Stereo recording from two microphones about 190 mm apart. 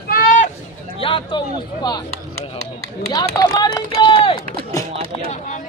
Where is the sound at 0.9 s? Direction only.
30° left (ahead or behind).